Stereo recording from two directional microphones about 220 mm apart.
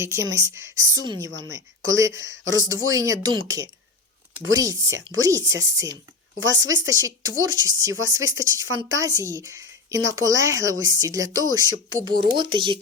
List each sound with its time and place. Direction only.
0.0 s speech: 10° right (ahead or behind)
2.4 s speech: 65° right (ahead or behind)
2.6 s a woman's voice: 15° right (ahead or behind)